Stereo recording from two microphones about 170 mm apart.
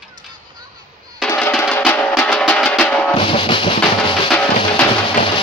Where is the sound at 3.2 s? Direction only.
30° left (ahead or behind).